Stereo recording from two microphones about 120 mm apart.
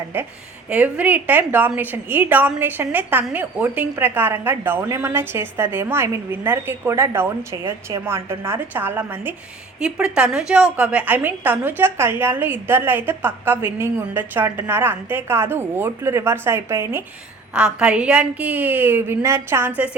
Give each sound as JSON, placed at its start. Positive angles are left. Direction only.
{"t": 0.1, "sound": "a woman's voice", "side_deg": -15}
{"t": 17.5, "sound": "a woman's voice", "side_deg": -10}